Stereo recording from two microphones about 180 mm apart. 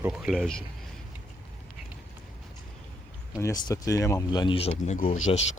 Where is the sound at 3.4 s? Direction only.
20° left (ahead or behind).